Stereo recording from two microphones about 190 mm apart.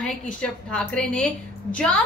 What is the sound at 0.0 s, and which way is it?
Speech, 5° left (ahead or behind).